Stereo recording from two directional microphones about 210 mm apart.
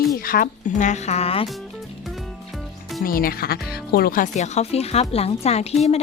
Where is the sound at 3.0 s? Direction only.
45° left (ahead or behind).